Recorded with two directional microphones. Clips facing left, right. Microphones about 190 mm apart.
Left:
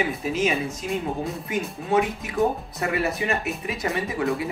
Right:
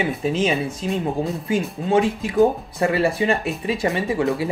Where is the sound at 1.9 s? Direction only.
30° right (ahead or behind).